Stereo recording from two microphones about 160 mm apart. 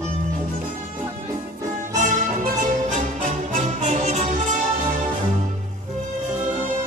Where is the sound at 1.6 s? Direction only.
50° right (ahead or behind).